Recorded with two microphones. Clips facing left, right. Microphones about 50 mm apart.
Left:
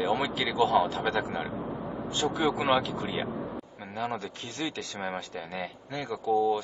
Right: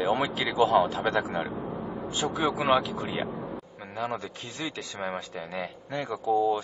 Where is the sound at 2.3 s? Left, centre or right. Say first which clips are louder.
Right 2 dB; centre.